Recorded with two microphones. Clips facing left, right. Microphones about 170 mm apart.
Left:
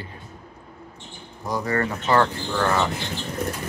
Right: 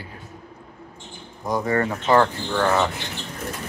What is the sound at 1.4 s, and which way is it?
Speech, 20° right (ahead or behind).